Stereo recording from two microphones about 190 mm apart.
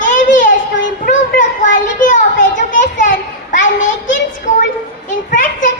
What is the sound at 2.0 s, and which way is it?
Children playing, 40° left (ahead or behind).